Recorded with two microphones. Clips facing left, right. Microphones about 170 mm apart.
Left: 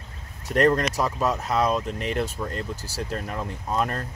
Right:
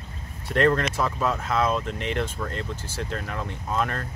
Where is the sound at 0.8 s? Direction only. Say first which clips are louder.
Left 1 dB; 40° left (ahead or behind).